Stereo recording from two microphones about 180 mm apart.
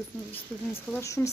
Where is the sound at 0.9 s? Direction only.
15° left (ahead or behind).